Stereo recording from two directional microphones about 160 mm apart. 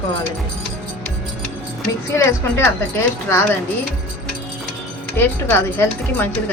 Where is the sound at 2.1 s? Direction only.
15° left (ahead or behind).